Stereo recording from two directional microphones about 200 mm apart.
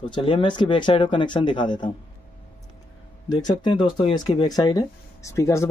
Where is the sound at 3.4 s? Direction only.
20° left (ahead or behind).